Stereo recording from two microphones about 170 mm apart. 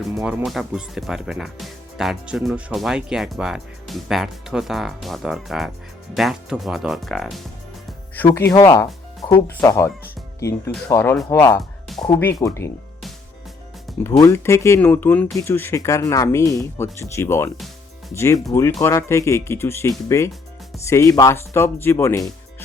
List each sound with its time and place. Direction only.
0.2 s speech: 5° right (ahead or behind)
8.1 s speech: 10° left (ahead or behind)
14.0 s speech: 15° left (ahead or behind)